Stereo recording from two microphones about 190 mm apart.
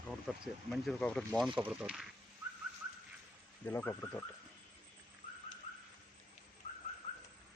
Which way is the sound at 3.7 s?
10° left (ahead or behind).